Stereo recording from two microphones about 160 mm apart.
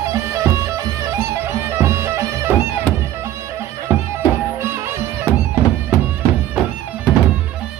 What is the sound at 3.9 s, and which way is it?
Music, 15° right (ahead or behind).